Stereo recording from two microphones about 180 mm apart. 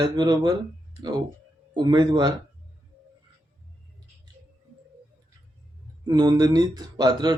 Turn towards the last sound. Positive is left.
turn(degrees=-25)  # may be behind; listen again after turning